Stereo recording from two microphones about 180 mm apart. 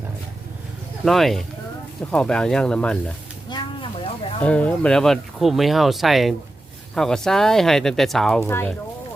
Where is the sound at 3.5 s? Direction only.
25° left (ahead or behind).